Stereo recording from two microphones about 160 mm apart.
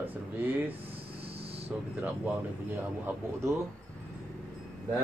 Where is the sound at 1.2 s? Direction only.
35° right (ahead or behind).